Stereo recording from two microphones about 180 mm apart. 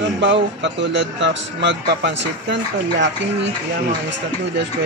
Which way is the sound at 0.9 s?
80° right.